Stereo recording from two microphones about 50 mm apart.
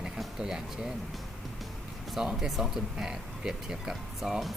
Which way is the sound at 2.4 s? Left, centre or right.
Centre.